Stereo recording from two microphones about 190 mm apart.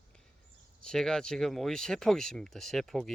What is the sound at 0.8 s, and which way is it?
Speech, 5° left (ahead or behind).